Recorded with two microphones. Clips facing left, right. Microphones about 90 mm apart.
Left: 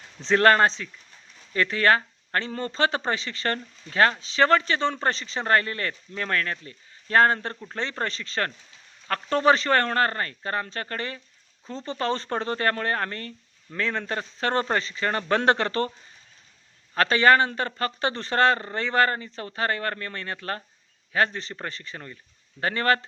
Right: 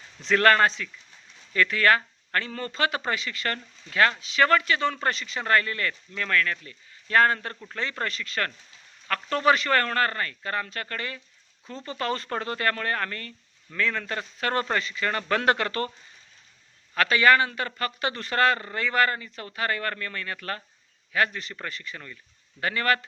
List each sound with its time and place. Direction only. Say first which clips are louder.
0.2 s speech: left 1 dB; 25° left (ahead or behind)
16.9 s speech: left 1 dB; 35° left (ahead or behind)